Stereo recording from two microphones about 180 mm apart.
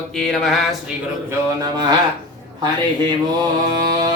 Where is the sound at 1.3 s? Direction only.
20° right (ahead or behind).